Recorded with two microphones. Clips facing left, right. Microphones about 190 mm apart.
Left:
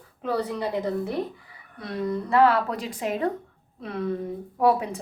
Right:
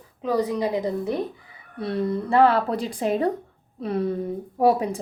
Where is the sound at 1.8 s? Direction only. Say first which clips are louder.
Right 3 dB; 30° right (ahead or behind).